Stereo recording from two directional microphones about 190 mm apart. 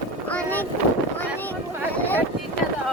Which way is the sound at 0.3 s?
5° left (ahead or behind).